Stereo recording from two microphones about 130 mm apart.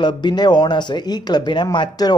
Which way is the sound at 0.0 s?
35° left (ahead or behind).